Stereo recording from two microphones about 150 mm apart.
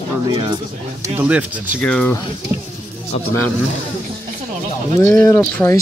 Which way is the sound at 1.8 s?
5° left (ahead or behind).